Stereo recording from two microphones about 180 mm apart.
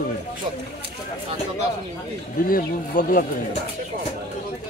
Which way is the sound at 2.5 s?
50° left (ahead or behind).